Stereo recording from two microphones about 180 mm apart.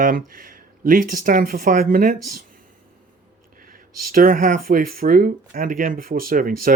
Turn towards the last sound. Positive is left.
turn(degrees=-50)  # may be behind; listen again after turning